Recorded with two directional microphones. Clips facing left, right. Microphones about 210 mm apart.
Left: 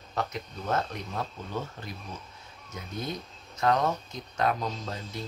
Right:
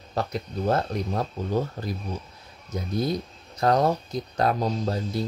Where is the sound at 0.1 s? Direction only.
35° right (ahead or behind).